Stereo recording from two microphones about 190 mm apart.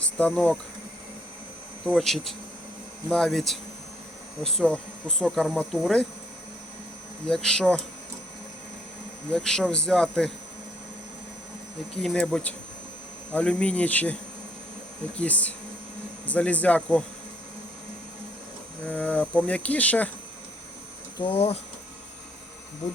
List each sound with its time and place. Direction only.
0.0 s speech: 5° left (ahead or behind)
2.0 s speech: centre (ahead or behind)
7.3 s speech: 5° left (ahead or behind)
9.3 s speech: centre (ahead or behind)
12.0 s speech: 5° left (ahead or behind)
15.2 s speech: 5° left (ahead or behind)
18.9 s speech: 5° left (ahead or behind)
21.2 s speech: 30° left (ahead or behind)